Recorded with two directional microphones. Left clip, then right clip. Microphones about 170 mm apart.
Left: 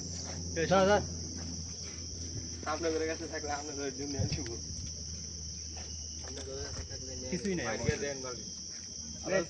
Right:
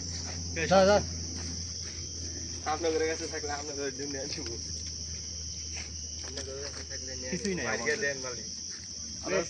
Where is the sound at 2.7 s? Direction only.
Centre (ahead or behind).